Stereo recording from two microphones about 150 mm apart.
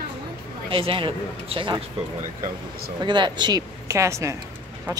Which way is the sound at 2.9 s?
30° right (ahead or behind).